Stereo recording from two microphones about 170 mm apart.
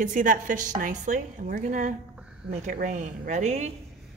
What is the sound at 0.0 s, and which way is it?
A woman's voice, 50° right (ahead or behind).